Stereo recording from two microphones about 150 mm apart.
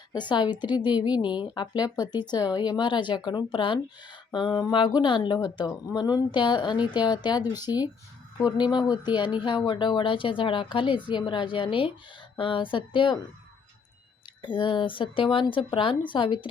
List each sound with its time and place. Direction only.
0.1 s a woman's voice: 30° left (ahead or behind)
14.4 s a woman's voice: 30° left (ahead or behind)